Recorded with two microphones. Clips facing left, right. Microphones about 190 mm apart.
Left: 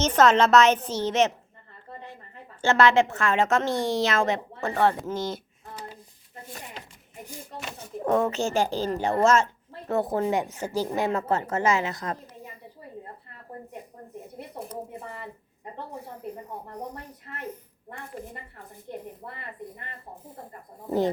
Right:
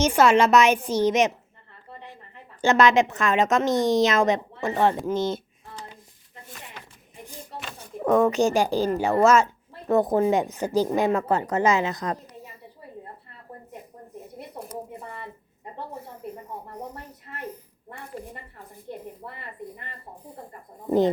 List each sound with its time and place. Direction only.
0.0 s a woman's voice: 10° right (ahead or behind)
2.6 s a woman's voice: 15° right (ahead or behind)
8.0 s a woman's voice: 15° right (ahead or behind)
10.2 s speech: 30° right (ahead or behind)
10.5 s a woman's voice: 15° right (ahead or behind)